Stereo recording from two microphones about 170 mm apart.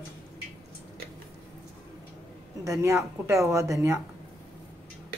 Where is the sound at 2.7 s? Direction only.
15° right (ahead or behind).